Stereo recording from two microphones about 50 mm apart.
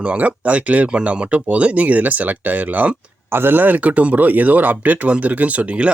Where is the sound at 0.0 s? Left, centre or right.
Right.